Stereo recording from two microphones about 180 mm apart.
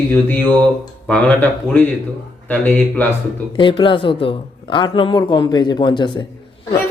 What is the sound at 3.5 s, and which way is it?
A man's voice, 25° left (ahead or behind).